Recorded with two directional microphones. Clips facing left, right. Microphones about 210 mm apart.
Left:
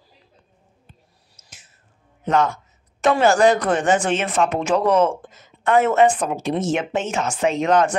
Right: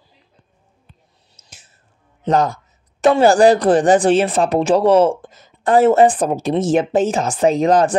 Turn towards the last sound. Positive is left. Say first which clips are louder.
# right 4 dB
turn(degrees=-35)  # may be behind; listen again after turning